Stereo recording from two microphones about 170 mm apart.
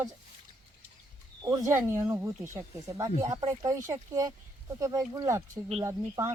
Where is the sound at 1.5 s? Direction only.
20° right (ahead or behind).